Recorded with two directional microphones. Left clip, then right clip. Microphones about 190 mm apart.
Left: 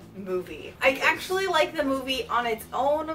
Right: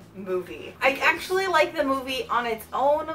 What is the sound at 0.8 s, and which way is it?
A woman's voice, 15° left (ahead or behind).